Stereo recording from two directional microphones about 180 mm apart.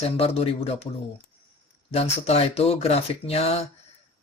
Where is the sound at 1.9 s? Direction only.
35° left (ahead or behind).